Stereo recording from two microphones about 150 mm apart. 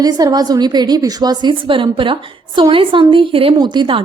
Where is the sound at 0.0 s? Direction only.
25° right (ahead or behind).